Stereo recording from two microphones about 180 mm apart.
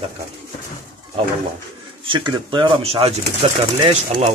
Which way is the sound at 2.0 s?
25° right (ahead or behind).